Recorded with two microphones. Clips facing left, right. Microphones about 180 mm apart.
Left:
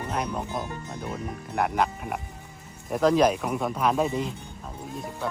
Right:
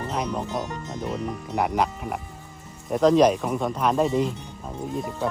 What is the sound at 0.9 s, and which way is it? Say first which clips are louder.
Speech: right 6 dB; 20° right (ahead or behind).